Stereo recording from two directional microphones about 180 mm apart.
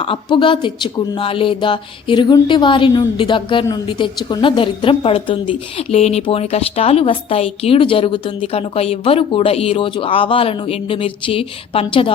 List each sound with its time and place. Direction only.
0.0 s a woman's voice: 30° left (ahead or behind)